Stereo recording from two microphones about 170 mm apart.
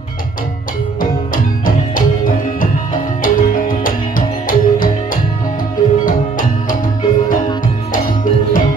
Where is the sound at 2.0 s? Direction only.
55° left (ahead or behind).